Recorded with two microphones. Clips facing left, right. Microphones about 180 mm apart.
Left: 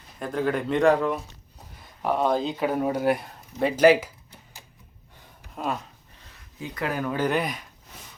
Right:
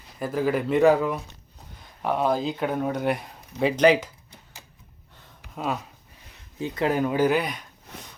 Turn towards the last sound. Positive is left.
turn(degrees=0)  # may be behind; listen again after turning